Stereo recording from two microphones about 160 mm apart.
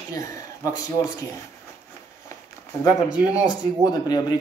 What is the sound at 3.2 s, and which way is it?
Speech, 25° left (ahead or behind).